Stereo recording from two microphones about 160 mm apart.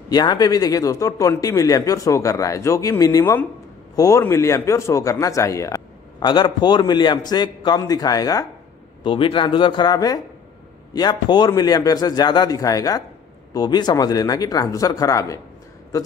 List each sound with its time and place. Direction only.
0.1 s a man's voice: 25° left (ahead or behind)